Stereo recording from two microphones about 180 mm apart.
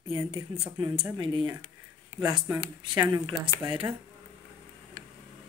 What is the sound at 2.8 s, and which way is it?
Speech, 25° right (ahead or behind).